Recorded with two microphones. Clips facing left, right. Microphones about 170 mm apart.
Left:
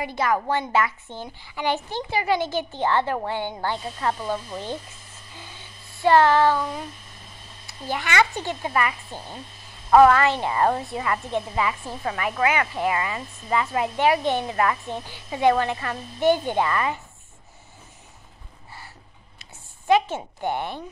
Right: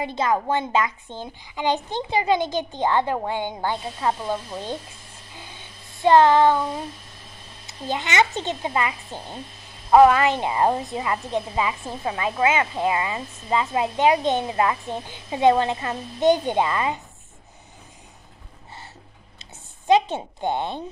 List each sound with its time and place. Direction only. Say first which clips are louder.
0.0 s a woman's voice: right 1 dB; 20° right (ahead or behind)
6.0 s a woman's voice: right 2 dB; 20° right (ahead or behind)
19.9 s a woman's voice: right 2 dB; 20° right (ahead or behind)